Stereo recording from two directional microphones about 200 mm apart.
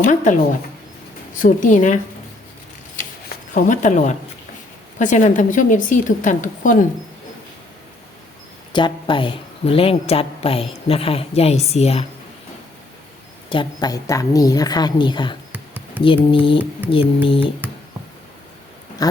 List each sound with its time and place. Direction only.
0.0 s a woman's voice: 40° left (ahead or behind)
1.4 s a woman's voice: 40° left (ahead or behind)
3.2 s a woman's voice: 40° left (ahead or behind)
8.7 s speech: 25° left (ahead or behind)
13.5 s speech: 20° left (ahead or behind)